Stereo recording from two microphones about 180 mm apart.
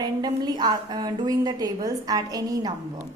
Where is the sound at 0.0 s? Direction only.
25° right (ahead or behind).